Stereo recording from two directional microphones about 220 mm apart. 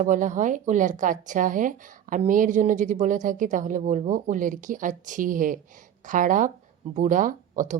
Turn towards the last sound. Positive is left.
turn(degrees=-35)  # may be behind; listen again after turning